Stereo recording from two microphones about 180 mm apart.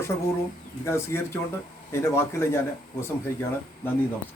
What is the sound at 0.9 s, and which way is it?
A man's voice, 15° left (ahead or behind).